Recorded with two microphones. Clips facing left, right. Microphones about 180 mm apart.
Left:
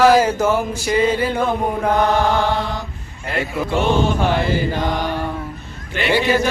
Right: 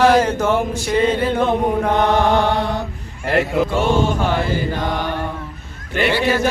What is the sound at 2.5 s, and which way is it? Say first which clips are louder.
Mantra: right 3 dB; 60° right (ahead or behind).